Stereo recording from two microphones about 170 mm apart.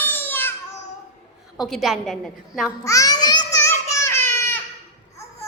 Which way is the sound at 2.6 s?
20° left (ahead or behind).